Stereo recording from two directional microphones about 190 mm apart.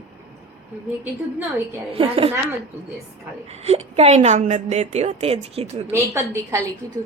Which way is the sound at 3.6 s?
35° right (ahead or behind).